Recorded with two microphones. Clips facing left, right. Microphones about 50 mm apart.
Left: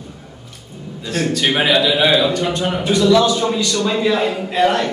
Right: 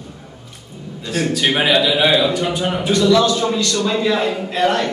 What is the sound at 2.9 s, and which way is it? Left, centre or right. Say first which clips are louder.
A man's voice: left 1 dB; centre.